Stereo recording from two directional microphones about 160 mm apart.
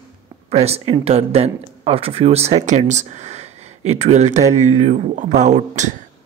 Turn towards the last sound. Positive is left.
turn(degrees=-50)  # may be behind; listen again after turning